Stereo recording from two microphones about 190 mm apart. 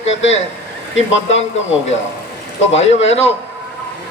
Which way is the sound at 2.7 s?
35° left (ahead or behind).